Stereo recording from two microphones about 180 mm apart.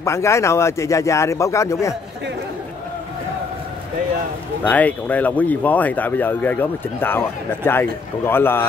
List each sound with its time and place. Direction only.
0.0 s speech: 15° left (ahead or behind)
4.6 s speech: 10° left (ahead or behind)